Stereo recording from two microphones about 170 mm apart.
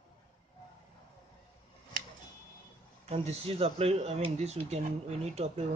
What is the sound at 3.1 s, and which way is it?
Speech, 35° right (ahead or behind).